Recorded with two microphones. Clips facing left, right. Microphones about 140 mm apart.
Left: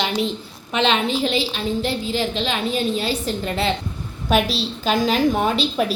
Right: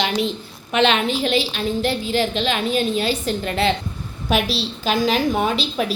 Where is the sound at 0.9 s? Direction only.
30° left (ahead or behind).